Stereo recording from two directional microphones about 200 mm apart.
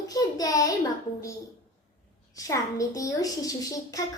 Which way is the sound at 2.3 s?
15° left (ahead or behind).